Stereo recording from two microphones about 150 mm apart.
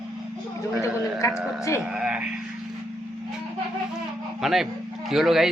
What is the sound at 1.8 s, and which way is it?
Speech, 5° right (ahead or behind).